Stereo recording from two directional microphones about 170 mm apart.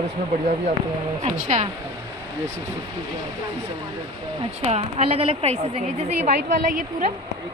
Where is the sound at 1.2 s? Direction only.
45° right (ahead or behind).